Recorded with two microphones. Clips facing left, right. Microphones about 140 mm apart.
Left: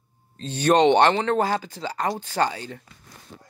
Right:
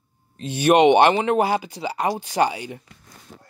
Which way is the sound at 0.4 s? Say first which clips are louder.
Right 3 dB; 10° right (ahead or behind).